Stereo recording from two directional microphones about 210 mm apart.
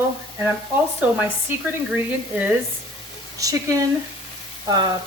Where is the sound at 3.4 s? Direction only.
15° right (ahead or behind).